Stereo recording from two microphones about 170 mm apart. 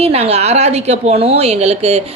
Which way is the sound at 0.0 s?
35° right (ahead or behind).